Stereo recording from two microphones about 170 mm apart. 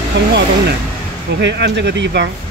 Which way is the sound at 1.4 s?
85° right.